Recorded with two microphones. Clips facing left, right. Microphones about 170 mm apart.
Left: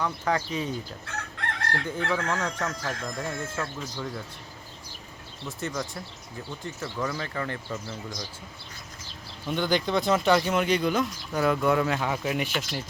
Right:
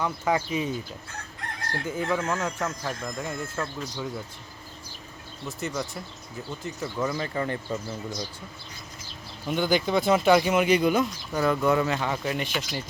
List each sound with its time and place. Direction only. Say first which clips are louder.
0.0 s speech: right 1 dB; 10° right (ahead or behind)
1.0 s chicken: left 4 dB; 85° left
1.8 s speech: right 3 dB; 10° right (ahead or behind)
5.5 s speech: right 1 dB; centre (ahead or behind)
7.0 s speech: right 3 dB; 20° right (ahead or behind)
9.5 s speech: right 2 dB; 5° right (ahead or behind)
11.3 s speech: right 1 dB; centre (ahead or behind)